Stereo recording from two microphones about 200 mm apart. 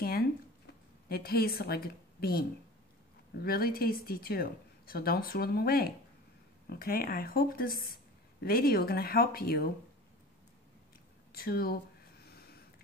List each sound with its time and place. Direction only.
1.0 s a woman's voice: 50° left (ahead or behind)
11.3 s a woman's voice: 50° left (ahead or behind)
12.3 s a sound: 50° left (ahead or behind)